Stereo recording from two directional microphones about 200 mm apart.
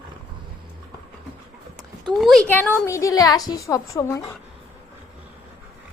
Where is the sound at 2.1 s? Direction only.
Centre (ahead or behind).